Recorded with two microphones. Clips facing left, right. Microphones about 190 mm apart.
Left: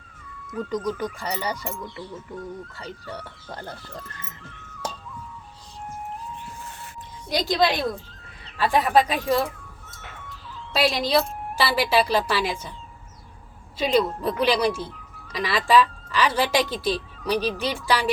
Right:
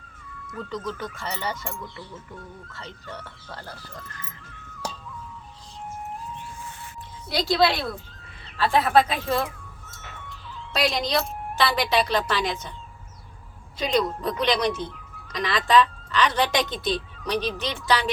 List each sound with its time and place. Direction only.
0.5 s speech: 10° left (ahead or behind)
7.3 s speech: 15° left (ahead or behind)
10.7 s speech: 5° left (ahead or behind)
13.7 s speech: 5° left (ahead or behind)